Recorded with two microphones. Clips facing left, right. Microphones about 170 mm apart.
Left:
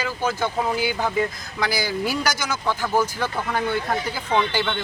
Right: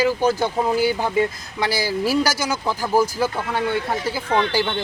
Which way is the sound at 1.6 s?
25° right (ahead or behind).